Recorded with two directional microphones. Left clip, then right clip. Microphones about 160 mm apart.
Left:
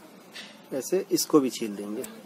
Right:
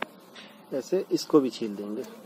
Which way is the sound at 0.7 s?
Centre (ahead or behind).